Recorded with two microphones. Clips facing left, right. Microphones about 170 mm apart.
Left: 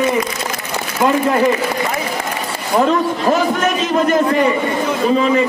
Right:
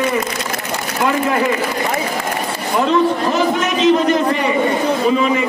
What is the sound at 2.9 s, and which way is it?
A man's voice, 50° left (ahead or behind).